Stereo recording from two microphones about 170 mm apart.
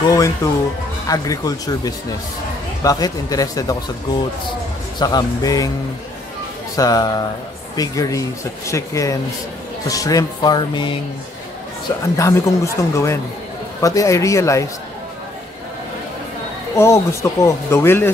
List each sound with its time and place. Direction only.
0.0 s speech: 20° left (ahead or behind)
4.9 s speech: 25° left (ahead or behind)
6.8 s speech: 20° left (ahead or behind)
12.2 s speech: 15° left (ahead or behind)
16.7 s speech: 15° left (ahead or behind)